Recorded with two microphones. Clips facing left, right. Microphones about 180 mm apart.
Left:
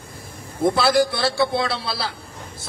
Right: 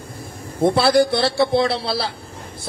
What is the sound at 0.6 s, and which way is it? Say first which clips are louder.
A man's voice: right 3 dB; 25° right (ahead or behind).